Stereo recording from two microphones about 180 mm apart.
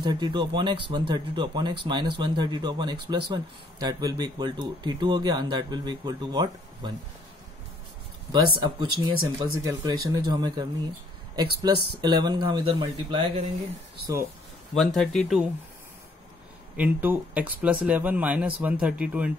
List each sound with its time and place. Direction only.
0.0 s speech: 25° right (ahead or behind)
8.3 s speech: 25° right (ahead or behind)
14.7 s speech: 5° left (ahead or behind)
16.7 s speech: 10° right (ahead or behind)